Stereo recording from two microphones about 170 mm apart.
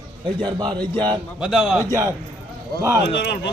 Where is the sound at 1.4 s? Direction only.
Centre (ahead or behind).